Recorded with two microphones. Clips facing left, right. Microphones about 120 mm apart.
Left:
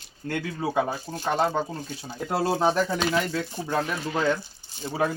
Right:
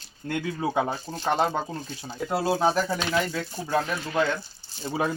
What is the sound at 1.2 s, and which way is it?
Speech, 15° right (ahead or behind).